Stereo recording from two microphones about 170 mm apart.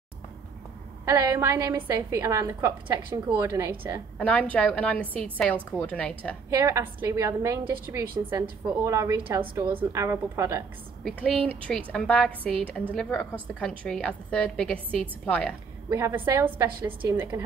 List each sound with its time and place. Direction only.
1.0 s a woman's voice: 20° right (ahead or behind)
4.2 s a woman's voice: 10° left (ahead or behind)
6.5 s a woman's voice: 15° right (ahead or behind)
11.1 s a woman's voice: 10° left (ahead or behind)
15.9 s a woman's voice: 15° right (ahead or behind)